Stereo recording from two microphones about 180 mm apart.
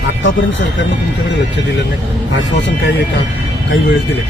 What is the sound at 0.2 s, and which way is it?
Speech, 90° left.